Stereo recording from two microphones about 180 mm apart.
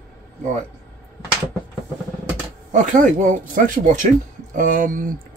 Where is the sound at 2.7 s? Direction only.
45° right (ahead or behind).